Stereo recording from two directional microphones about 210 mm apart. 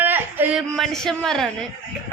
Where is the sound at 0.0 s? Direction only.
10° right (ahead or behind).